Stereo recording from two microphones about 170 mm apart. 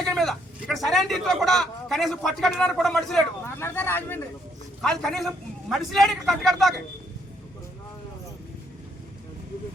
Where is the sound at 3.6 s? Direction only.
15° left (ahead or behind).